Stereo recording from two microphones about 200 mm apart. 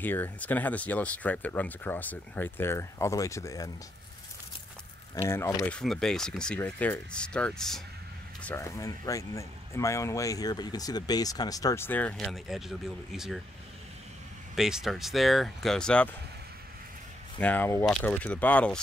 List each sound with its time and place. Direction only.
0.0 s speech: 10° left (ahead or behind)
5.1 s speech: 10° left (ahead or behind)
14.5 s speech: centre (ahead or behind)
17.4 s speech: 10° left (ahead or behind)